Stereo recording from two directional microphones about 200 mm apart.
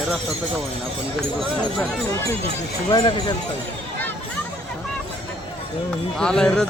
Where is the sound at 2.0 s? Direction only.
15° left (ahead or behind).